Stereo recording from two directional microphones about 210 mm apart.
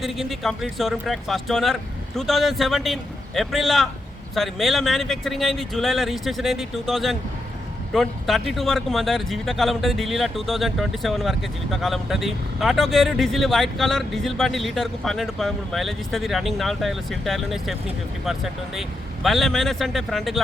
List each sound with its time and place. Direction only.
0.0 s speech: centre (ahead or behind)